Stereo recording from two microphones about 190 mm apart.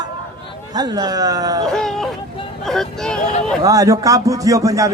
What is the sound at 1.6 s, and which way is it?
Speech, centre (ahead or behind).